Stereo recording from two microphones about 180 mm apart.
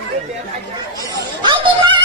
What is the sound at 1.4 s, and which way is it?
Music, 25° right (ahead or behind).